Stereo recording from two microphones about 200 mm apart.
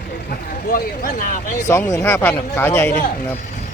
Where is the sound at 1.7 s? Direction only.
15° left (ahead or behind).